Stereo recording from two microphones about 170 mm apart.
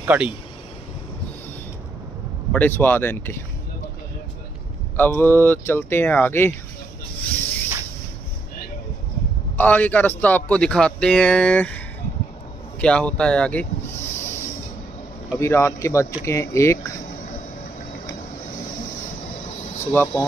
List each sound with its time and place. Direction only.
0.0 s speech: 10° right (ahead or behind)
2.5 s a man's voice: 10° left (ahead or behind)
4.9 s a man's voice: 10° left (ahead or behind)
9.6 s a man's voice: 10° left (ahead or behind)
12.8 s a sound: 5° left (ahead or behind)
15.3 s a man's voice: 15° left (ahead or behind)
19.8 s speech: 15° left (ahead or behind)